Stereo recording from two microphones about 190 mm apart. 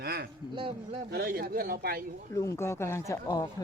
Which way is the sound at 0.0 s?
55° right (ahead or behind).